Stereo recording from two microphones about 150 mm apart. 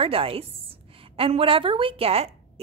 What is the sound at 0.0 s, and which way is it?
A woman's voice, 40° right (ahead or behind).